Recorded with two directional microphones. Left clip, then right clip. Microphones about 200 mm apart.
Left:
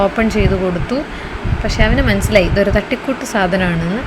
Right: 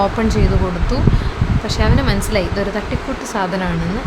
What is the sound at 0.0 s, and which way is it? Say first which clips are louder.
Speech: left 2 dB; 10° left (ahead or behind).